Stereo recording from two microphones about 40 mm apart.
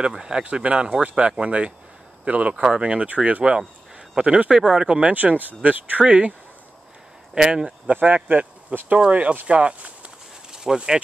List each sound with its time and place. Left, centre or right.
0.0 s speech: right
4.5 s speech: centre
5.0 s speech: right
6.0 s speech: right
7.3 s speech: centre
7.8 s speech: right
9.5 s speech: right
10.5 s insect: centre